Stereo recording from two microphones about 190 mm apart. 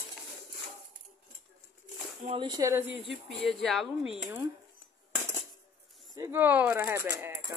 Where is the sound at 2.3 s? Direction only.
25° right (ahead or behind).